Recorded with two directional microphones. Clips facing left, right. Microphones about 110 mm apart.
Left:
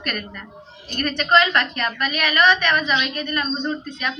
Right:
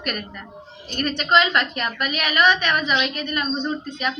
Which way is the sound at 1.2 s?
15° right (ahead or behind).